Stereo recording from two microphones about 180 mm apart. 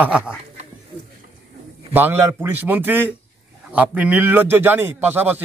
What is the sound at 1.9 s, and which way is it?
A man's voice, 10° right (ahead or behind).